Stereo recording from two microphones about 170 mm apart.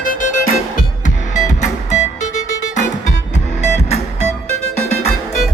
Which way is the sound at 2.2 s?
45° left (ahead or behind).